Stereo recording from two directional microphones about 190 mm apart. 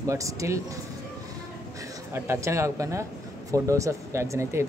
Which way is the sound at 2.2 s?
15° right (ahead or behind).